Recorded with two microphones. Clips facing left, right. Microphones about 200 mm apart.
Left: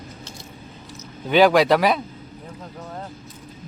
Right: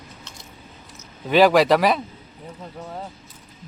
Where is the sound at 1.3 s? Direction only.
Centre (ahead or behind).